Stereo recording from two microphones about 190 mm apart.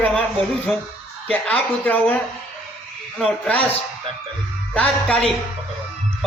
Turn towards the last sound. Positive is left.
turn(degrees=5)  # may be behind; listen again after turning